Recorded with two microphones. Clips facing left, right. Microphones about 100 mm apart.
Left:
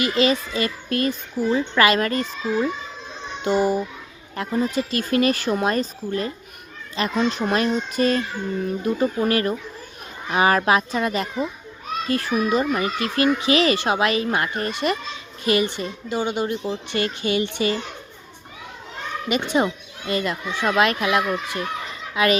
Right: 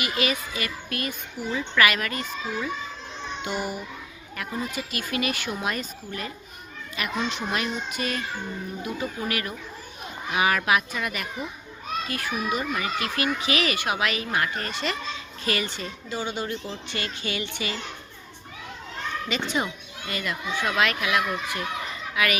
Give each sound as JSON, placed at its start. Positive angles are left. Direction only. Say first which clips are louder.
{"t": 0.0, "sound": "a child's voice", "louder": "left 7 dB", "side_deg": 30}
{"t": 19.3, "sound": "a child's voice", "louder": "left 8 dB", "side_deg": 20}